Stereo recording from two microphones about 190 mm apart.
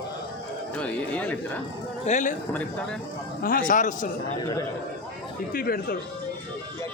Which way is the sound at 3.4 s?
45° left (ahead or behind).